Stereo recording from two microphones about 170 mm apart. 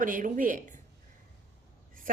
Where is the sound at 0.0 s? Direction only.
50° right (ahead or behind).